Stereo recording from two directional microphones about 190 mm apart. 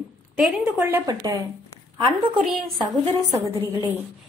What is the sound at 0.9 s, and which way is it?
Speech, 15° right (ahead or behind).